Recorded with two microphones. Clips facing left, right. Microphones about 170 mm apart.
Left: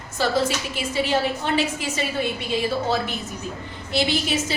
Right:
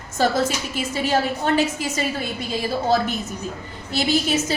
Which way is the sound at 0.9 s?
45° right (ahead or behind).